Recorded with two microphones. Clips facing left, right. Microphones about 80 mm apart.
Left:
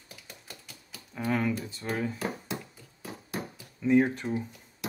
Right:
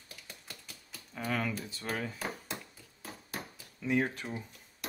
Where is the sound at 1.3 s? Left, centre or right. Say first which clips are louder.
Left 6 dB; centre.